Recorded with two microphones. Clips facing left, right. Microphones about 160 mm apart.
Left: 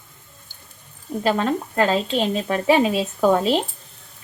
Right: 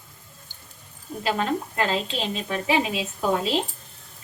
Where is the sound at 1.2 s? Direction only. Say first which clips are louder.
Left 4 dB; 45° left (ahead or behind).